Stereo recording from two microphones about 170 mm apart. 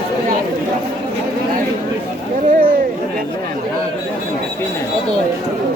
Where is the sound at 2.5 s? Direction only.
55° right (ahead or behind).